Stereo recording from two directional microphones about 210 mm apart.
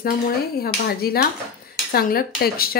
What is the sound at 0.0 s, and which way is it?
Speech, 45° left (ahead or behind).